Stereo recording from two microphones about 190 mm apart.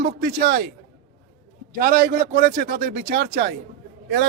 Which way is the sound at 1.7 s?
50° right (ahead or behind).